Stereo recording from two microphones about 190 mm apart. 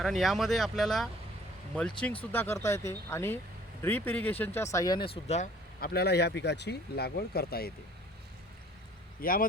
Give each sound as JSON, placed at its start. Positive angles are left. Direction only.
{"t": 0.0, "sound": "speech", "side_deg": 0}
{"t": 5.8, "sound": "speech", "side_deg": 60}
{"t": 9.2, "sound": "speech", "side_deg": 50}